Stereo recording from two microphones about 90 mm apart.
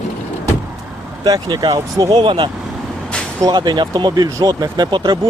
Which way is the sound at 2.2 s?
65° right (ahead or behind).